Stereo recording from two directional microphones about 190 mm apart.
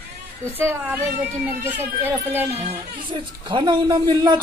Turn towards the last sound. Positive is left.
turn(degrees=-25)  # may be behind; listen again after turning